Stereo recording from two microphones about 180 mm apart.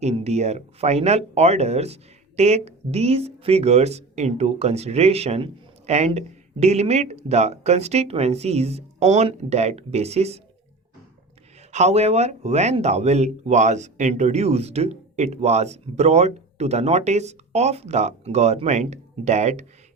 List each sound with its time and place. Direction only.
0.0 s speech: 35° right (ahead or behind)
11.7 s speech: 40° right (ahead or behind)